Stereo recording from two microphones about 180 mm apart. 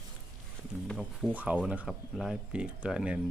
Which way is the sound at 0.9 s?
Centre (ahead or behind).